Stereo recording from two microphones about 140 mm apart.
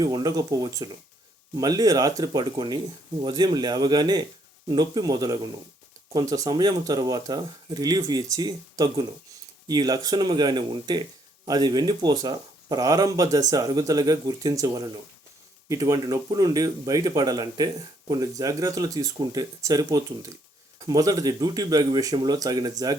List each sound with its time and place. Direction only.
0.0 s speech: 30° right (ahead or behind)